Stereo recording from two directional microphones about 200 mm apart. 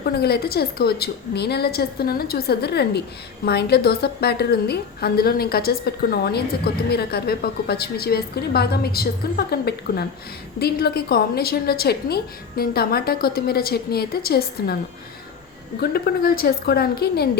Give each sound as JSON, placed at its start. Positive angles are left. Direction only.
{"t": 0.0, "sound": "a woman's voice", "side_deg": 50}
{"t": 15.8, "sound": "a woman's voice", "side_deg": 50}